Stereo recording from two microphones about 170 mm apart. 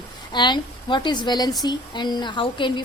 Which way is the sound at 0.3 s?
25° left (ahead or behind).